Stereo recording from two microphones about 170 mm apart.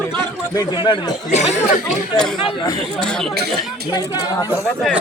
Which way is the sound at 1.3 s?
40° left (ahead or behind).